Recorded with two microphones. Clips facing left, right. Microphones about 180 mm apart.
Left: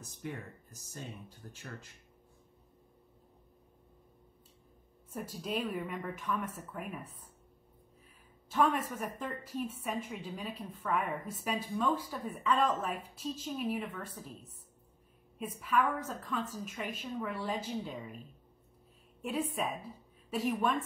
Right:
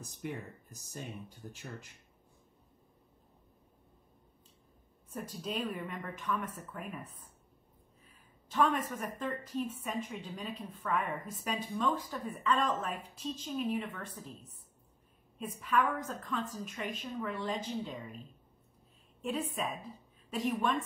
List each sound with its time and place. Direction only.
0.0 s speech: 15° right (ahead or behind)
5.1 s a woman's voice: 10° left (ahead or behind)
8.5 s a woman's voice: 5° left (ahead or behind)
15.3 s a woman's voice: 5° left (ahead or behind)
19.2 s a woman's voice: 10° left (ahead or behind)